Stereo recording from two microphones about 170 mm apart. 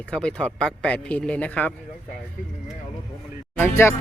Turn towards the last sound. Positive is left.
turn(degrees=15)  # may be behind; listen again after turning